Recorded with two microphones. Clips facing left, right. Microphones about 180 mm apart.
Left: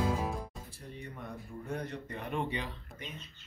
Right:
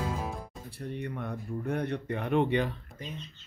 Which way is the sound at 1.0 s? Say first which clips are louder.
Right 5 dB; 65° right (ahead or behind).